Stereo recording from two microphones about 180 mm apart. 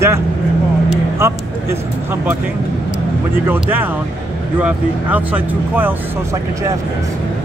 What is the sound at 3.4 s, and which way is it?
Speech, 10° right (ahead or behind).